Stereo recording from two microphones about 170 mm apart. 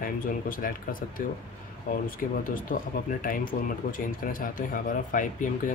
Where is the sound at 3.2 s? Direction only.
55° left (ahead or behind).